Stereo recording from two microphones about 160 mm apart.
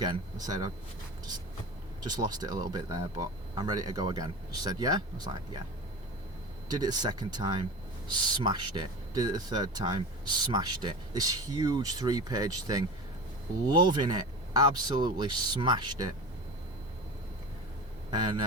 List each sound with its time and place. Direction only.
0.0 s speech: 25° right (ahead or behind)
2.0 s speech: 25° right (ahead or behind)
6.7 s speech: 25° right (ahead or behind)